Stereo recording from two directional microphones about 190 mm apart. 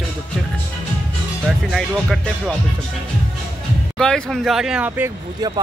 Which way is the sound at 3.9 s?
5° left (ahead or behind).